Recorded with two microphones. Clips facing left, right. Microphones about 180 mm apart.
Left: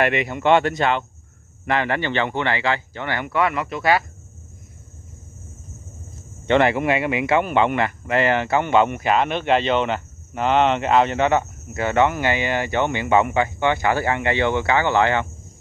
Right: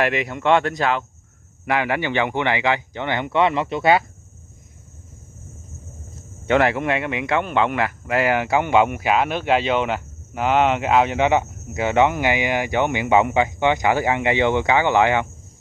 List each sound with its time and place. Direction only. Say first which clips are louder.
0.0 s speech: left 1 dB; centre (ahead or behind); by 4.0 s 25° right (ahead or behind)
6.4 s speech: left 1 dB; 5° right (ahead or behind)